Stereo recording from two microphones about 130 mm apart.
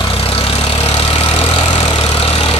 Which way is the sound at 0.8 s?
50° left (ahead or behind).